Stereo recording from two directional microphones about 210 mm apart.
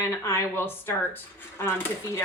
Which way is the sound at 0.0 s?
15° left (ahead or behind).